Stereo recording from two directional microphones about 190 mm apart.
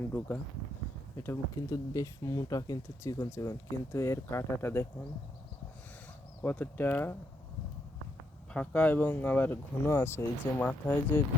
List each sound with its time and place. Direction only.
1.2 s speech: 15° left (ahead or behind)
6.4 s speech: 10° left (ahead or behind)
8.5 s speech: 5° left (ahead or behind)